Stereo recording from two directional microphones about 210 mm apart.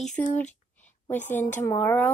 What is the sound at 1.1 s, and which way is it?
Speech, 10° left (ahead or behind).